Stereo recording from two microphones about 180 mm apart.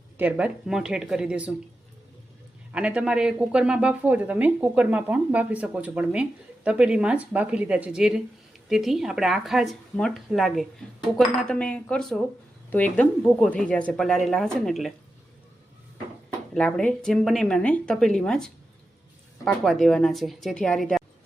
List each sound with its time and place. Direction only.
0.2 s speech: 10° right (ahead or behind)
2.7 s speech: 5° right (ahead or behind)
16.6 s speech: 5° left (ahead or behind)